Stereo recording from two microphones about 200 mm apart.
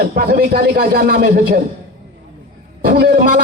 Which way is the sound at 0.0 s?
50° right (ahead or behind).